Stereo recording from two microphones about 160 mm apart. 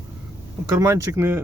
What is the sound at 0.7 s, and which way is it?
Speech, 15° right (ahead or behind).